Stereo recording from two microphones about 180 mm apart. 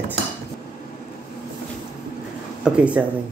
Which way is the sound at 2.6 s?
5° right (ahead or behind).